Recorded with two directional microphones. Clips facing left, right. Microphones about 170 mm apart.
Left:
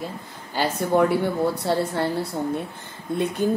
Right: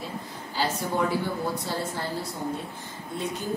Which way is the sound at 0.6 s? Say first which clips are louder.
Left 7 dB; 65° left (ahead or behind).